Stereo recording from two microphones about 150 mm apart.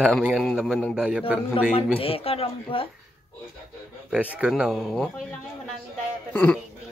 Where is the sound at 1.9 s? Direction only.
40° left (ahead or behind).